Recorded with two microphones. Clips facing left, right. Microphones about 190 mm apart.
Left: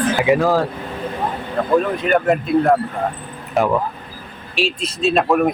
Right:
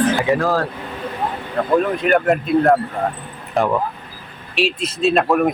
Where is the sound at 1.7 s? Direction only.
Centre (ahead or behind).